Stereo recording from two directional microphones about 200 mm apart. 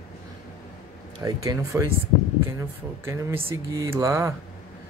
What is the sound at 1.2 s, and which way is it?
Speech, 15° right (ahead or behind).